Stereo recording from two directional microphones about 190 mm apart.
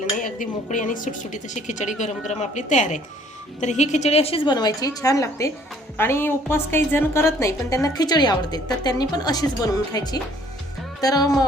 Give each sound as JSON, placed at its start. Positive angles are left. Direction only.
{"t": 0.2, "sound": "a woman's voice", "side_deg": 45}